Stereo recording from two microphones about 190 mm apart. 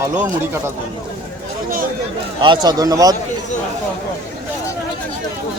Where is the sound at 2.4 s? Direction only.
25° right (ahead or behind).